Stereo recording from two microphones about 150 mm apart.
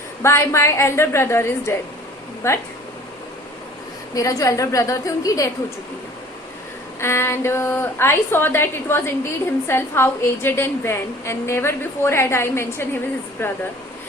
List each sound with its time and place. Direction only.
0.2 s a woman's voice: 20° left (ahead or behind)
4.1 s a woman's voice: 20° left (ahead or behind)
7.0 s a woman's voice: 15° left (ahead or behind)